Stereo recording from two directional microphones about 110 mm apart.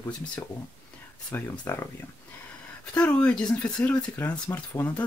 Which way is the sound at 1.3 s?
25° left (ahead or behind).